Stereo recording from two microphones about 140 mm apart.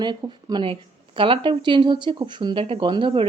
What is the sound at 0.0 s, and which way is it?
Speech, 30° right (ahead or behind).